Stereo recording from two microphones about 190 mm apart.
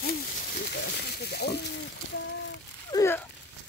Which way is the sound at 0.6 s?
55° left (ahead or behind).